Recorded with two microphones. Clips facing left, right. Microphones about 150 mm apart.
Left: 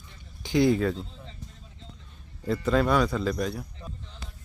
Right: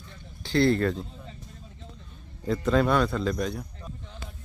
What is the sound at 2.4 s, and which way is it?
A man's voice, centre (ahead or behind).